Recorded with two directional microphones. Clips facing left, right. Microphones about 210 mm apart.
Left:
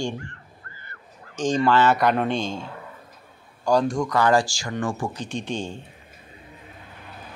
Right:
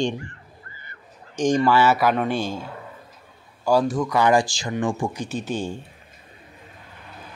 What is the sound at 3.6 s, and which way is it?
Speech, 5° right (ahead or behind).